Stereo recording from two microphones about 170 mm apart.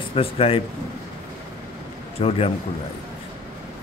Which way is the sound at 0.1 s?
35° left (ahead or behind).